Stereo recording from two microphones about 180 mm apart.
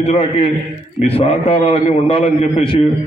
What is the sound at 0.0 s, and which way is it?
A man's voice, 35° left (ahead or behind).